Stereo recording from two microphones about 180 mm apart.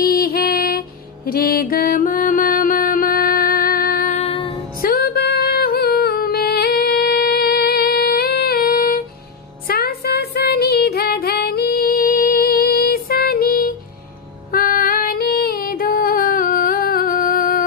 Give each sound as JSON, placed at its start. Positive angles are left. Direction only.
{"t": 0.0, "sound": "music", "side_deg": 55}
{"t": 4.2, "sound": "female singing", "side_deg": 30}
{"t": 4.8, "sound": "music", "side_deg": 55}
{"t": 9.7, "sound": "female singing", "side_deg": 60}